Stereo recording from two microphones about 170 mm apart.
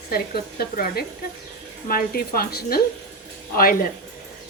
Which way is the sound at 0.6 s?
65° left (ahead or behind).